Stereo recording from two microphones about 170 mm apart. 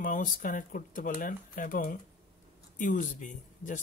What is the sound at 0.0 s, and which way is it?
Speech, 50° left (ahead or behind).